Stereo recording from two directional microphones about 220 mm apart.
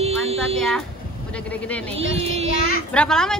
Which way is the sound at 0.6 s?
5° left (ahead or behind).